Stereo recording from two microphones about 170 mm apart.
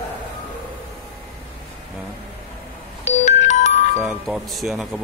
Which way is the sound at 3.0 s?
45° left (ahead or behind).